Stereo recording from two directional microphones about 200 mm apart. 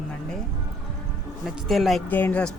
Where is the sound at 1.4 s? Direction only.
Centre (ahead or behind).